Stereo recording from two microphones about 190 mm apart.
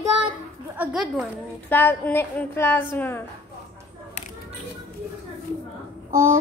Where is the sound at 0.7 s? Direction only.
10° right (ahead or behind).